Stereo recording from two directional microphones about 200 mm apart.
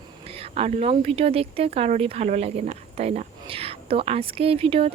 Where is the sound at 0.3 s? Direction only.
30° right (ahead or behind).